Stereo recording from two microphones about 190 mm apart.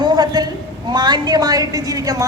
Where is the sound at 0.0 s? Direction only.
20° right (ahead or behind).